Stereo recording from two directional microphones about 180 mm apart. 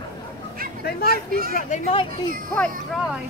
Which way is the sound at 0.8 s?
60° left (ahead or behind).